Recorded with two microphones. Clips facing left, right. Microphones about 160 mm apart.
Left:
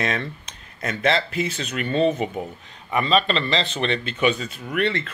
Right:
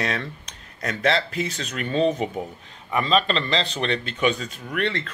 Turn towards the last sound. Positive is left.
turn(degrees=5)  # may be behind; listen again after turning